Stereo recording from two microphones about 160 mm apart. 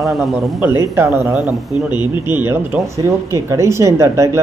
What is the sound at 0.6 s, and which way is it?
Speech, 15° right (ahead or behind).